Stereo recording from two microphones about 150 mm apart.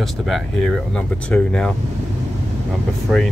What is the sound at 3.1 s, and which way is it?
Speech, 5° right (ahead or behind).